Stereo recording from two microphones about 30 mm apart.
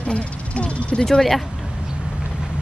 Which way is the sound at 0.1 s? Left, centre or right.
Left.